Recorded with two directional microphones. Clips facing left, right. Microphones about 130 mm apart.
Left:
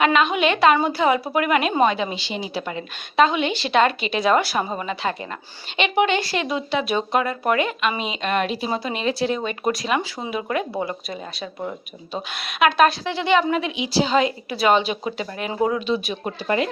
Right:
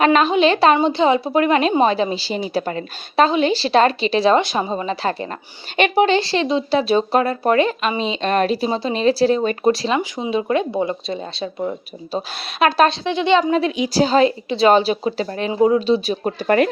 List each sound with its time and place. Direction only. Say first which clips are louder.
0.0 s speech: right 4 dB; 40° right (ahead or behind)
5.7 s speech: right 4 dB; 40° right (ahead or behind)
13.1 s speech: right 3 dB; 20° right (ahead or behind)
13.6 s speech: right 5 dB; 40° right (ahead or behind)
16.4 s speech: right 6 dB; 55° right (ahead or behind)